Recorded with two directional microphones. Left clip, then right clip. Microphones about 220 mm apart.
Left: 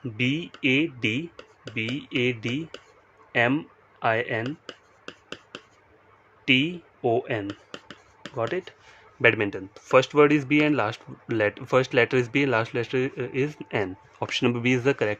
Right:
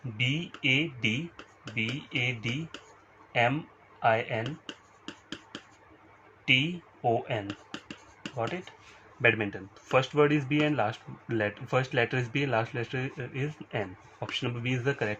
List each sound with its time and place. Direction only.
0.2 s speech: 55° left (ahead or behind)
4.0 s speech: 55° left (ahead or behind)
6.4 s speech: 55° left (ahead or behind)
9.2 s speech: 40° left (ahead or behind)